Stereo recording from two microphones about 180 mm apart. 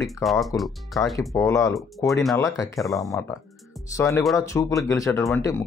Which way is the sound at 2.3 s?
20° left (ahead or behind).